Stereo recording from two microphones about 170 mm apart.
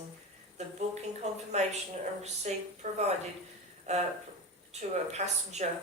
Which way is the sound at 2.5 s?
40° right (ahead or behind).